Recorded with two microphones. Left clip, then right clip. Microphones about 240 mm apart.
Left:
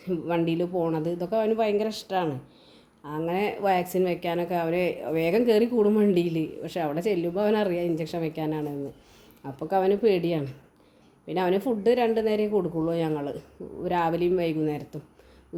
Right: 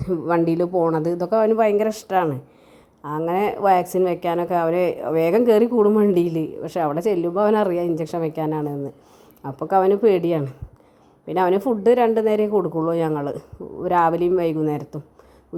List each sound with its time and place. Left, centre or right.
0.1 s a woman's voice: right